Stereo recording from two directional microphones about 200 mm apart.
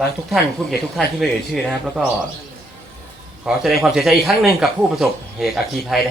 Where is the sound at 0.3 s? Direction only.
Centre (ahead or behind).